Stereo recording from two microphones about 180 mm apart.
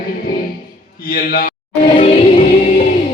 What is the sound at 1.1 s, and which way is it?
Speech, 55° left (ahead or behind).